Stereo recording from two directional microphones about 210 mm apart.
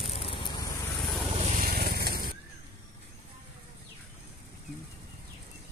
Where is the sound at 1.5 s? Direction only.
45° right (ahead or behind).